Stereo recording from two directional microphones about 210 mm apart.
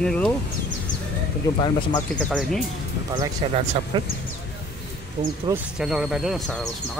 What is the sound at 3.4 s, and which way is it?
Speech, 25° right (ahead or behind).